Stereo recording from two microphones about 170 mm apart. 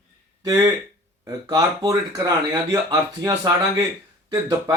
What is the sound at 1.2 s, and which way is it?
Speech, 20° right (ahead or behind).